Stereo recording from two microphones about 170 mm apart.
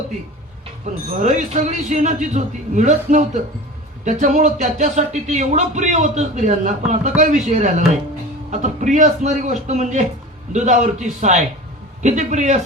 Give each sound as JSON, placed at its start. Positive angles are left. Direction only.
{"t": 1.2, "sound": "speech", "side_deg": -45}